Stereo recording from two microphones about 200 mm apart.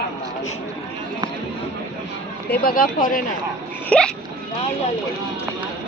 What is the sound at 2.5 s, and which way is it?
Speech, 45° left (ahead or behind).